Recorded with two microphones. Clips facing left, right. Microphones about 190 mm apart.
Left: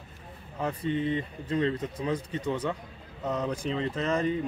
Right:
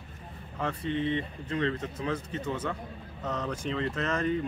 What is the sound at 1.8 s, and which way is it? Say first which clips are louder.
Speech: left 2 dB; 15° left (ahead or behind).